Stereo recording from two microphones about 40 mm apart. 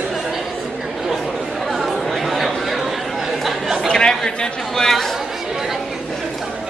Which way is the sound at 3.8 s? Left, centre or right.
Centre.